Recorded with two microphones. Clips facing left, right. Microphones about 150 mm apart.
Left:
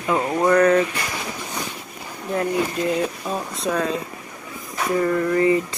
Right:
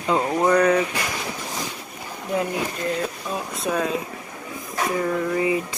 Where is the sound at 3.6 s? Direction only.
15° right (ahead or behind).